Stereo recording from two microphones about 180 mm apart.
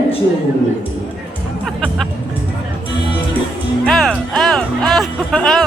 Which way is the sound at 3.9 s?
5° left (ahead or behind).